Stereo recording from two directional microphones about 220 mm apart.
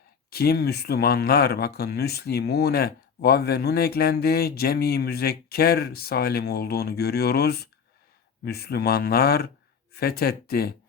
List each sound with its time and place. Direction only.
0.3 s speech: 45° left (ahead or behind)